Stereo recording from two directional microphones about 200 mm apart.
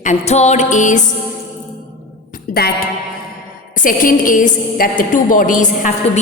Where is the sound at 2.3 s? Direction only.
50° left (ahead or behind).